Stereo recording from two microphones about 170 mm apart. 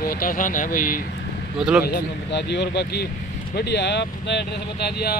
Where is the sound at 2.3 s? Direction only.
80° left.